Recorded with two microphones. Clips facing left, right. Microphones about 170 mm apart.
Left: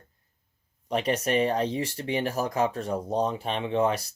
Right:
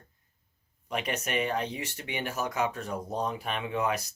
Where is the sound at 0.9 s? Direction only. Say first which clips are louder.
Left 7 dB; 35° left (ahead or behind).